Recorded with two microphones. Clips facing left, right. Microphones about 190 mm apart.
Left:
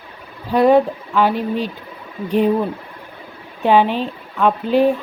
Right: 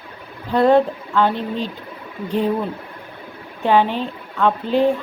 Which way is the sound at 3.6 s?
15° left (ahead or behind).